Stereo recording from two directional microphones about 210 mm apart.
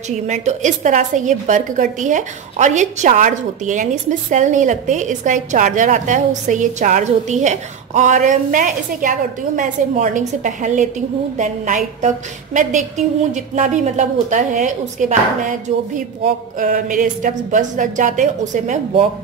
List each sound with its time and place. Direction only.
0.1 s a woman's voice: 35° right (ahead or behind)